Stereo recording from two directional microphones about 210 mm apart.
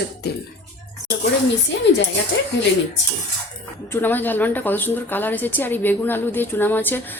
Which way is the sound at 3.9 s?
10° left (ahead or behind).